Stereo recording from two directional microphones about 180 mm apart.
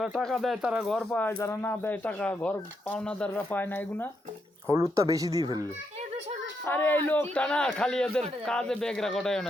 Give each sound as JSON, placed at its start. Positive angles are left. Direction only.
{"t": 0.2, "sound": "speech", "side_deg": 0}
{"t": 4.7, "sound": "speech", "side_deg": -15}
{"t": 6.7, "sound": "a man's voice", "side_deg": 10}